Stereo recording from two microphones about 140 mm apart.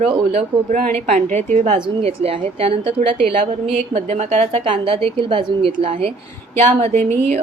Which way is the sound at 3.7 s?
50° right (ahead or behind).